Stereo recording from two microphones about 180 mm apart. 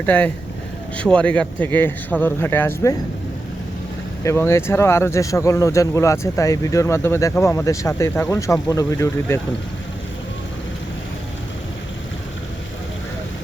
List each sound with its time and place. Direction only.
0.0 s speech: 10° left (ahead or behind)
4.2 s speech: 15° left (ahead or behind)